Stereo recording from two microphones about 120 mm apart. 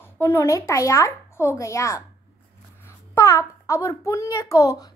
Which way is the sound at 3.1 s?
25° left (ahead or behind).